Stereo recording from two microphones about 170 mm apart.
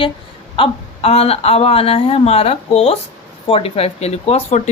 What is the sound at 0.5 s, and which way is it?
Speech, 35° left (ahead or behind).